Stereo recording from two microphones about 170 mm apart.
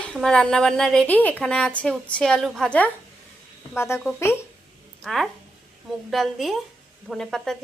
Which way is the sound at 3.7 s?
15° left (ahead or behind).